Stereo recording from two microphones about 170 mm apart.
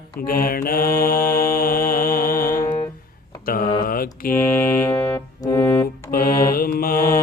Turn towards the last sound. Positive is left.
turn(degrees=60)  # may be behind; listen again after turning